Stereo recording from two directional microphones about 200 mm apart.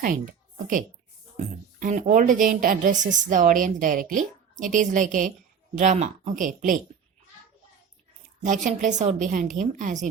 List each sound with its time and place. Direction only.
0.0 s a woman's voice: 40° right (ahead or behind)
8.4 s speech: 40° right (ahead or behind)